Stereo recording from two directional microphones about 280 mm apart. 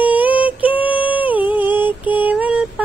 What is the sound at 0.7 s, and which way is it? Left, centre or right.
Music, centre.